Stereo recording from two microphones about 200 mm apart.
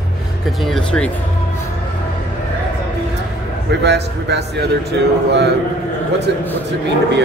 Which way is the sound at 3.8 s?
55° right (ahead or behind).